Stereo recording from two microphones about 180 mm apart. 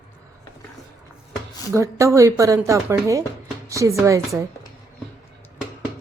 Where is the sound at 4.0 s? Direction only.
15° right (ahead or behind).